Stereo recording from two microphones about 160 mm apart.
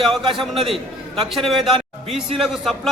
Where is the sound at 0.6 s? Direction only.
35° right (ahead or behind).